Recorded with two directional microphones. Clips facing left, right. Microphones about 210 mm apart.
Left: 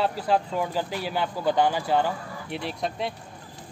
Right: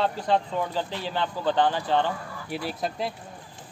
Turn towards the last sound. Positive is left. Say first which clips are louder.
# even
turn(degrees=0)  # may be behind; listen again after turning